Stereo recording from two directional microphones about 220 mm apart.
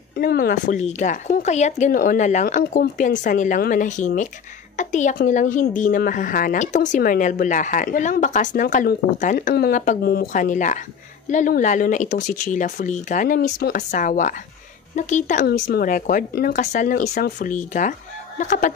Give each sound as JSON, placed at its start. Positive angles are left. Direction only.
{"t": 0.1, "sound": "a woman's voice", "side_deg": 45}